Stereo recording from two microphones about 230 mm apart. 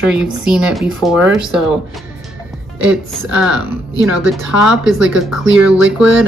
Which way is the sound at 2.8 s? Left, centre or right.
Centre.